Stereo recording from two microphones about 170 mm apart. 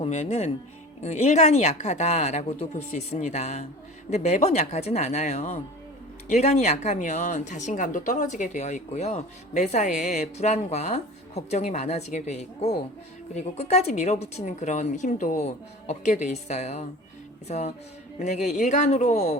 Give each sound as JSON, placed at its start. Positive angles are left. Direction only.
{"t": 0.0, "sound": "a woman's voice", "side_deg": 40}
{"t": 18.2, "sound": "speech", "side_deg": 45}